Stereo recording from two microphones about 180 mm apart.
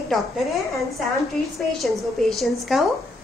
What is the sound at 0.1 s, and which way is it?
A woman's voice, centre (ahead or behind).